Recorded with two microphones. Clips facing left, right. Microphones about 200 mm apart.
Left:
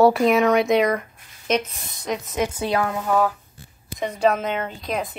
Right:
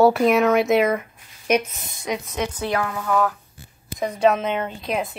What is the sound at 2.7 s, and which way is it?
Speech, 20° left (ahead or behind).